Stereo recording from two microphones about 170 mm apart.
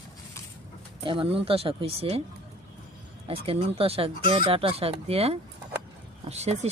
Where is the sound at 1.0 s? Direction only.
30° right (ahead or behind).